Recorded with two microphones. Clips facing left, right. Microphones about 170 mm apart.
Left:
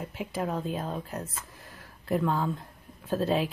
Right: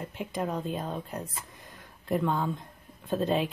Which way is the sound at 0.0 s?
Centre (ahead or behind).